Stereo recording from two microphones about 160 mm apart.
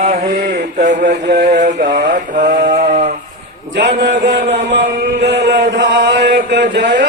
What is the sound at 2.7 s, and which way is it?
Sheep, 45° right (ahead or behind).